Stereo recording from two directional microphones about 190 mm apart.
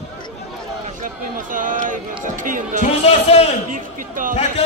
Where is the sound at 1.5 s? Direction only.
45° right (ahead or behind).